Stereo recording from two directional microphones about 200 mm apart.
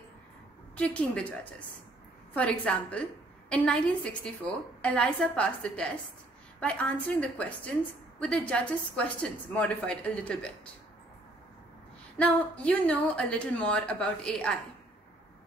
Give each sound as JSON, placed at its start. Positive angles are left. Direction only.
{"t": 0.7, "sound": "a woman's voice", "side_deg": 5}
{"t": 12.2, "sound": "a woman's voice", "side_deg": 5}